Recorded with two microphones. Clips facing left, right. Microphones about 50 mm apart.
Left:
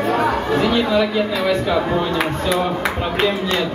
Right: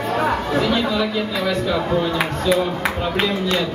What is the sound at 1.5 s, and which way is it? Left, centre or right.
Speech, centre.